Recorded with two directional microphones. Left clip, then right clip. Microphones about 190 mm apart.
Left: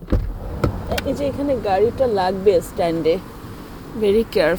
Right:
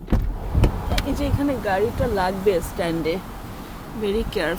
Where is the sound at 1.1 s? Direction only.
5° left (ahead or behind).